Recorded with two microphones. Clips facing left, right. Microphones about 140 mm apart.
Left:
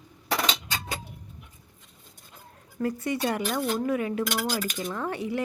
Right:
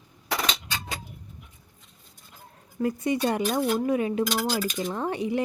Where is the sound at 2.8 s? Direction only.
15° right (ahead or behind).